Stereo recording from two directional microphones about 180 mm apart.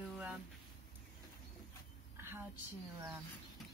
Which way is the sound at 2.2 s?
10° right (ahead or behind).